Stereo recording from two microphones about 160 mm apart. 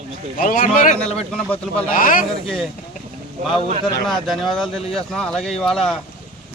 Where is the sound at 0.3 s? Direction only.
55° left (ahead or behind).